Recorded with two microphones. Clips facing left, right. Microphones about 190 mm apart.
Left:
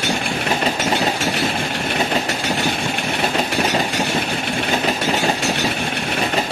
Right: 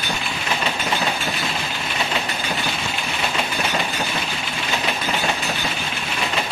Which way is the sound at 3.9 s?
75° left (ahead or behind).